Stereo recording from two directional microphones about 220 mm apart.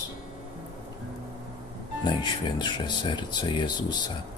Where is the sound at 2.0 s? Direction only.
20° left (ahead or behind).